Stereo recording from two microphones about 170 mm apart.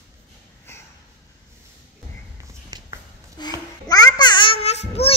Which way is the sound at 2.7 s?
25° right (ahead or behind).